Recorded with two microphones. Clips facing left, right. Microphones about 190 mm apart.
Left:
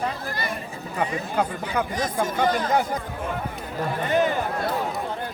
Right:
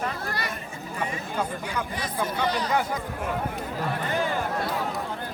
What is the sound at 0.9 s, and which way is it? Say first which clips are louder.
Speech: left 5 dB; 60° left (ahead or behind).